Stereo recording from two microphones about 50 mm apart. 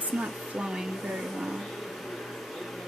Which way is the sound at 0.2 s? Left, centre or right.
Centre.